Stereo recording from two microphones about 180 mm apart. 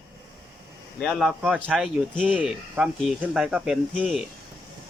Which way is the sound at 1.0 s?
Centre (ahead or behind).